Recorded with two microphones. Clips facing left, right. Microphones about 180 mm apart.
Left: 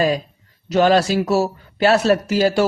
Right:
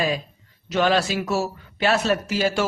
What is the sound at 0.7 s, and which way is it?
A man's voice, 40° left (ahead or behind).